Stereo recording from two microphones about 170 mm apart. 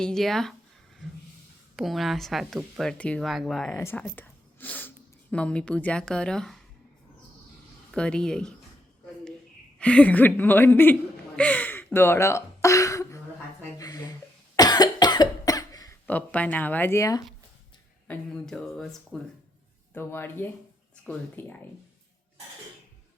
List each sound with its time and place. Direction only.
0.0 s speech: centre (ahead or behind)
1.7 s speech: centre (ahead or behind)
3.8 s a woman's voice: 15° left (ahead or behind)
7.9 s speech: 5° left (ahead or behind)
9.7 s a woman's voice: 5° left (ahead or behind)
11.3 s gasp: 10° left (ahead or behind)
11.9 s speech: 15° left (ahead or behind)
13.7 s a sound: 20° left (ahead or behind)
14.5 s cough: 25° left (ahead or behind)
16.0 s a woman's voice: 10° left (ahead or behind)
18.1 s a sound: 5° left (ahead or behind)
19.9 s a woman's voice: 15° left (ahead or behind)